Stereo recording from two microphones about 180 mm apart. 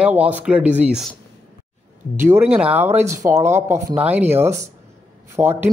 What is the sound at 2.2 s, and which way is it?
A man's voice, 10° right (ahead or behind).